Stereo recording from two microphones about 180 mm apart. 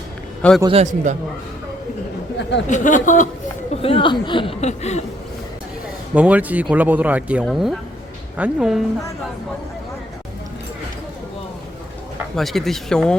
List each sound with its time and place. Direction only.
0.7 s a man's voice: 35° right (ahead or behind)
2.4 s speech: 75° left (ahead or behind)
2.6 s speech: 45° left (ahead or behind)
3.8 s speech: 30° left (ahead or behind)
6.1 s speech: 5° right (ahead or behind)
12.4 s speech: centre (ahead or behind)